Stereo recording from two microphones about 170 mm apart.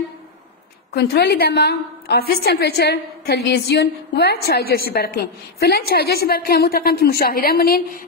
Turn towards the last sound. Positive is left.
turn(degrees=60)  # may be behind; listen again after turning